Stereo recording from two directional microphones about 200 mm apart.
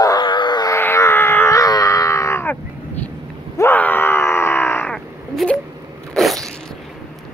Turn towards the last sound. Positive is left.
turn(degrees=0)  # may be behind; listen again after turning